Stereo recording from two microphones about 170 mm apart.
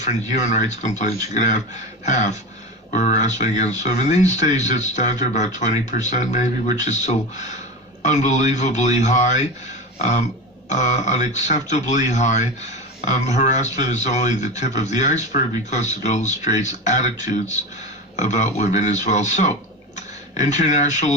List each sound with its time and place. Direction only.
0.0 s speech: 45° left (ahead or behind)
10.7 s speech: 45° left (ahead or behind)